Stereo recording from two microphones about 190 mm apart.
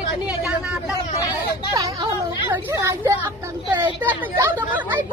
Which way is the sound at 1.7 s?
15° right (ahead or behind).